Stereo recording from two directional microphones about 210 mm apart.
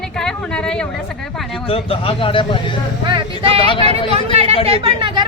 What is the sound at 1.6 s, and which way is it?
Speech, 25° left (ahead or behind).